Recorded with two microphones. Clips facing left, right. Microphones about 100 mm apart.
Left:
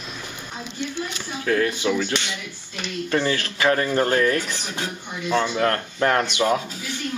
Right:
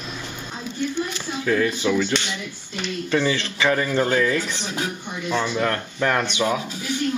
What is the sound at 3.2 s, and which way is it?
Speech, 5° right (ahead or behind).